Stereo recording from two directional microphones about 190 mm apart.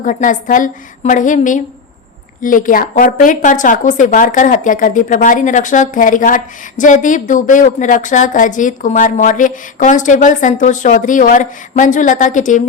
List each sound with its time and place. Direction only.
0.0 s a woman's voice: 45° left (ahead or behind)